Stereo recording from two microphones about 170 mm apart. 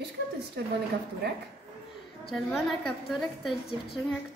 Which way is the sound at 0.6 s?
75° right (ahead or behind).